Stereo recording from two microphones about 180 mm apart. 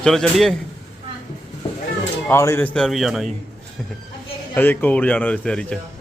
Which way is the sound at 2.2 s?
15° left (ahead or behind).